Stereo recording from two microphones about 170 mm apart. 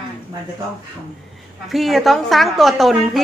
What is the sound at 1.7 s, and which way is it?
A woman's voice, centre (ahead or behind).